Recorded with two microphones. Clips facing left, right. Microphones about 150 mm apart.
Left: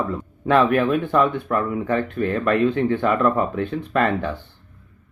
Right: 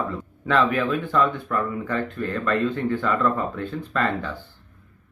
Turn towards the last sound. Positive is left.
turn(degrees=60)  # may be behind; listen again after turning